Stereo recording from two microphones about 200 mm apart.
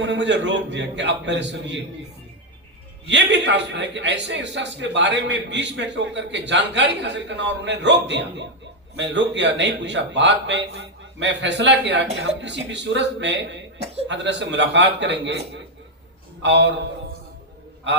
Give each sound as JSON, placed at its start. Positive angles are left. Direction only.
{"t": 0.0, "sound": "a man's voice", "side_deg": -60}
{"t": 3.1, "sound": "a man's voice", "side_deg": -60}
{"t": 16.4, "sound": "a man's voice", "side_deg": -60}